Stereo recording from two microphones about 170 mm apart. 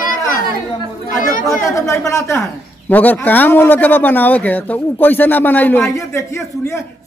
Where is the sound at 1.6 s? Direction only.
15° left (ahead or behind).